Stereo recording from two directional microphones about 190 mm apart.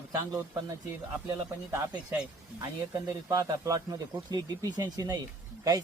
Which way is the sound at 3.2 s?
15° right (ahead or behind).